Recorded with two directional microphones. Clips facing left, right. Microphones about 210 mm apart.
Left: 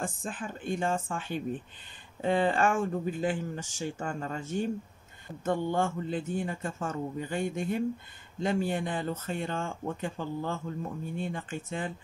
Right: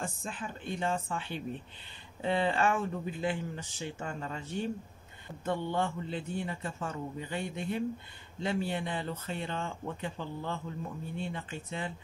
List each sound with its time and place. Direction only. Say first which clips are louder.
0.0 s speech: left 3 dB; 50° left (ahead or behind)